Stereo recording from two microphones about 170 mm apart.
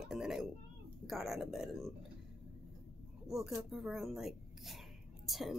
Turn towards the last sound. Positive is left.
turn(degrees=0)  # may be behind; listen again after turning